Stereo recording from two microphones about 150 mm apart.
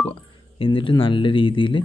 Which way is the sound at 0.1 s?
35° left (ahead or behind).